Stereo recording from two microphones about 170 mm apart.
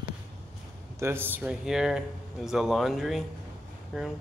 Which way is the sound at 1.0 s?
15° right (ahead or behind).